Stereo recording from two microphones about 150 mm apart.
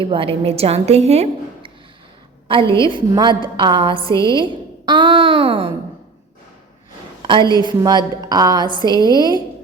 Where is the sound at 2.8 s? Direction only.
30° right (ahead or behind).